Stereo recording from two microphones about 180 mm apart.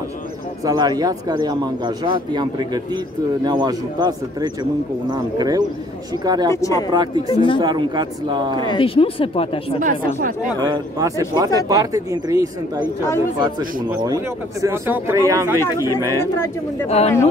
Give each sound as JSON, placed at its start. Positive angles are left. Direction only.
{"t": 0.7, "sound": "speech", "side_deg": -20}
{"t": 6.5, "sound": "speech", "side_deg": 15}
{"t": 6.9, "sound": "speech", "side_deg": -25}
{"t": 7.2, "sound": "speech", "side_deg": 25}
{"t": 7.6, "sound": "speech", "side_deg": -25}
{"t": 8.6, "sound": "speech", "side_deg": 30}
{"t": 9.8, "sound": "speech", "side_deg": -45}
{"t": 10.6, "sound": "speech", "side_deg": -20}
{"t": 14.0, "sound": "speech", "side_deg": -20}
{"t": 16.8, "sound": "speech", "side_deg": 35}